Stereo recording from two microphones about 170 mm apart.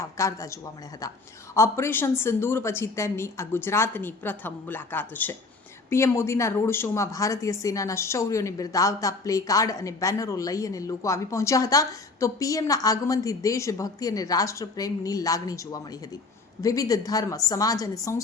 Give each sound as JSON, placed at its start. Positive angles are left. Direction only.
{"t": 0.0, "sound": "a woman's voice", "side_deg": 20}